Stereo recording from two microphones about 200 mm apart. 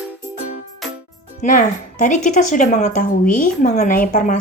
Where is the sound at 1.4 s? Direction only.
40° left (ahead or behind).